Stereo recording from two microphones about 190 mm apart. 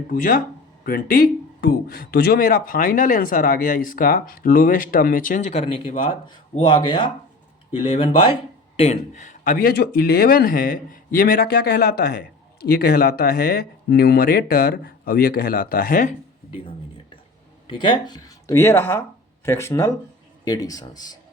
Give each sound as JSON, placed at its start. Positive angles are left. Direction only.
{"t": 0.1, "sound": "speech", "side_deg": 45}
{"t": 17.7, "sound": "speech", "side_deg": 25}